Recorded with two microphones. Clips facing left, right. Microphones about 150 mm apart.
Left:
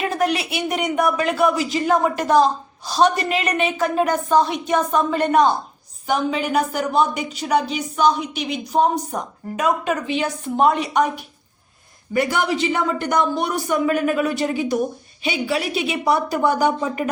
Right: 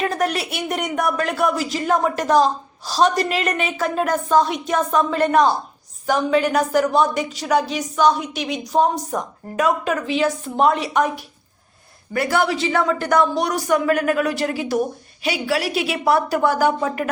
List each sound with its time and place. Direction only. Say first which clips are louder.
0.2 s speech: left 1 dB; centre (ahead or behind)
12.1 s speech: even; centre (ahead or behind)
13.8 s speech: right 1 dB; 45° right (ahead or behind)
14.2 s speech: left 1 dB; centre (ahead or behind)